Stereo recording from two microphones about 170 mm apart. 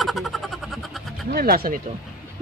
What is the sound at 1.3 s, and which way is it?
Speech, 60° right (ahead or behind).